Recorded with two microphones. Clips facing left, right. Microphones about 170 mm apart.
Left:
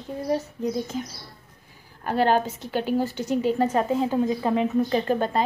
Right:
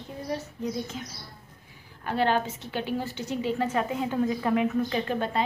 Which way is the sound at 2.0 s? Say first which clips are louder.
Left 4 dB; 45° left (ahead or behind).